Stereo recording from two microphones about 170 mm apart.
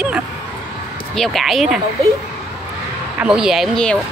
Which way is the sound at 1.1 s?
Centre (ahead or behind).